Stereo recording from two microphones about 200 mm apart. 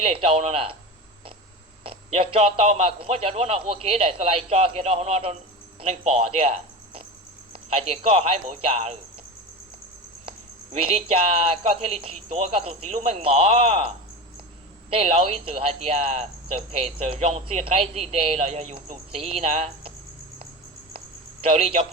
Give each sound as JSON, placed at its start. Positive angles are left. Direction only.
{"t": 0.0, "sound": "speech", "side_deg": -30}
{"t": 1.8, "sound": "speech", "side_deg": -30}
{"t": 10.2, "sound": "speech", "side_deg": -30}
{"t": 21.4, "sound": "speech", "side_deg": -30}